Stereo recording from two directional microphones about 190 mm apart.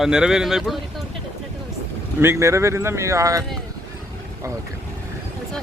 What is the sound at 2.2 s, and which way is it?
Speech, 15° right (ahead or behind).